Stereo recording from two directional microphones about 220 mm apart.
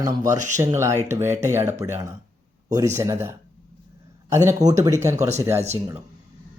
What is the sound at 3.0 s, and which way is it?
Speech, 10° right (ahead or behind).